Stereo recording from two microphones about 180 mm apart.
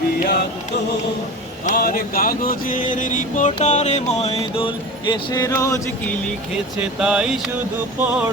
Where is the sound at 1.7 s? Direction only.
55° left (ahead or behind).